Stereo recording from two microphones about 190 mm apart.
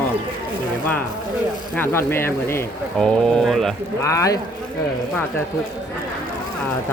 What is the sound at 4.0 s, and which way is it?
Speech, 15° left (ahead or behind).